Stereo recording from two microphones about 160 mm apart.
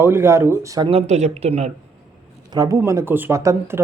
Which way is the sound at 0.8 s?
40° right (ahead or behind).